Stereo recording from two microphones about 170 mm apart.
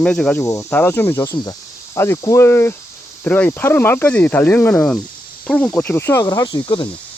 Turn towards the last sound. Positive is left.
turn(degrees=25)  # may be behind; listen again after turning